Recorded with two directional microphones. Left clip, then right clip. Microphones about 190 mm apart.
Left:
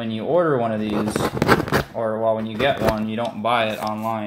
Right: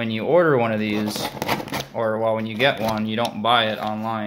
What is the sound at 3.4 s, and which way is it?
Speech, 25° right (ahead or behind).